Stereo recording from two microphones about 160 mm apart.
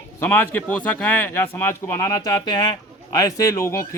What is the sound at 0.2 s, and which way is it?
Speech, 15° left (ahead or behind).